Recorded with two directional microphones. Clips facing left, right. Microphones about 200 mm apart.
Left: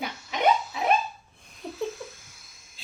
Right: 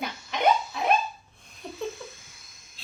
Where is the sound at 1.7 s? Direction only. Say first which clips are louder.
Left 2 dB; 5° left (ahead or behind).